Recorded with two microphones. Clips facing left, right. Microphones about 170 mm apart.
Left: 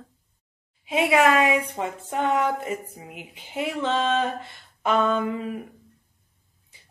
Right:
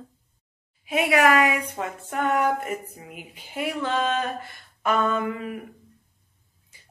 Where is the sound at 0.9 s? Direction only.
25° left (ahead or behind).